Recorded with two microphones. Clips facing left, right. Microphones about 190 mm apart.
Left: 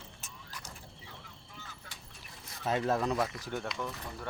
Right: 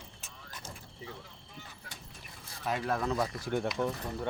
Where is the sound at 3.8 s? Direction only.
25° right (ahead or behind).